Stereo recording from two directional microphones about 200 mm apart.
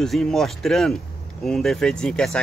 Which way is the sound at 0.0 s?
Centre (ahead or behind).